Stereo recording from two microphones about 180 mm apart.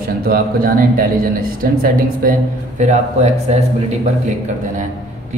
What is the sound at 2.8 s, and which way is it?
Speech, 40° right (ahead or behind).